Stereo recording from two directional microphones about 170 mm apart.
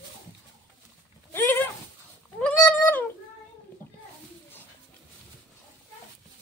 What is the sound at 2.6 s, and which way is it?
Cat, 15° left (ahead or behind).